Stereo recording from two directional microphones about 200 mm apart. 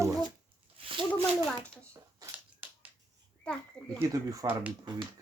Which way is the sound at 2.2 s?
10° right (ahead or behind).